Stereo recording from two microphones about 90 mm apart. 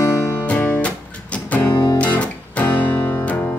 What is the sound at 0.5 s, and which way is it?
Music, 15° left (ahead or behind).